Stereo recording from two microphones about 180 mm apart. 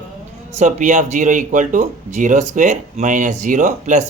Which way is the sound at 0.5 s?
40° right (ahead or behind).